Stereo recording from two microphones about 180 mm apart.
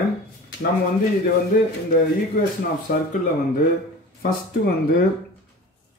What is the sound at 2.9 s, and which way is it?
Speech, 60° left (ahead or behind).